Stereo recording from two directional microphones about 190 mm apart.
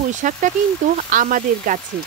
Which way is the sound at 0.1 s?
40° right (ahead or behind).